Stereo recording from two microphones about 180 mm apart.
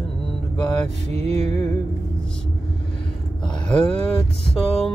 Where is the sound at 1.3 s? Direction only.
35° right (ahead or behind).